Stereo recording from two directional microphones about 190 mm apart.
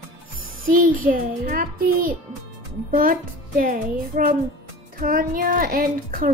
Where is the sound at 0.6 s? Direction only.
45° right (ahead or behind).